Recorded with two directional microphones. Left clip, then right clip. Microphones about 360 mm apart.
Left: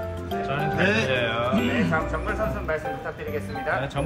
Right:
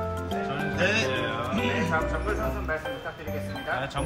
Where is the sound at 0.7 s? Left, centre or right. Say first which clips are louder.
Left 1 dB; centre.